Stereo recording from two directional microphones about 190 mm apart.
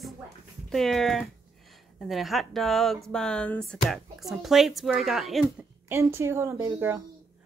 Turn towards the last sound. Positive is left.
turn(degrees=-15)  # may be behind; listen again after turning